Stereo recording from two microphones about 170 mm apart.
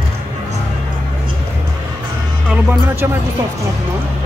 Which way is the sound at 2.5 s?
10° right (ahead or behind).